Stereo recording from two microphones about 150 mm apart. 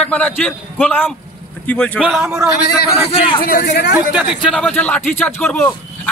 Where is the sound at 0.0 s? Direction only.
5° left (ahead or behind).